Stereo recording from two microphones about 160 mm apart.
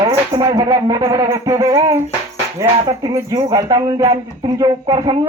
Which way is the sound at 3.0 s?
20° right (ahead or behind).